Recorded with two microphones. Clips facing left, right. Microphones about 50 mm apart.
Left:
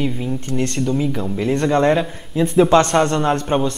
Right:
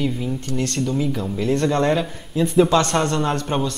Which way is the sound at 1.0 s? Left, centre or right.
Centre.